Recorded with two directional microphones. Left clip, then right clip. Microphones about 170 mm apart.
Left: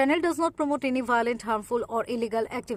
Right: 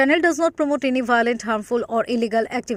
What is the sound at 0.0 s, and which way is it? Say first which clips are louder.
A woman's voice: right 7 dB; 20° right (ahead or behind).